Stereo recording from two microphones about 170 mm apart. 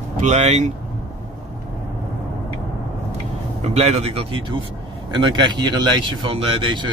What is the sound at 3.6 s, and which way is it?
Speech, 40° right (ahead or behind).